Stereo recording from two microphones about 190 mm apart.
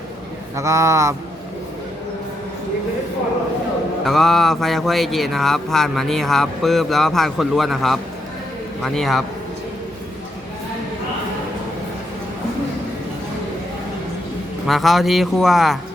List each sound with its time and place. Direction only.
0.5 s speech: 15° right (ahead or behind)
4.0 s speech: centre (ahead or behind)
14.7 s speech: centre (ahead or behind)